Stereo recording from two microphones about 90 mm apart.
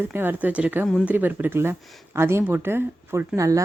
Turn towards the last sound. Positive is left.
turn(degrees=-35)  # may be behind; listen again after turning